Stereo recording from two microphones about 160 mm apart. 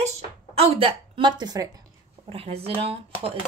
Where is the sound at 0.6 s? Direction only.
35° right (ahead or behind).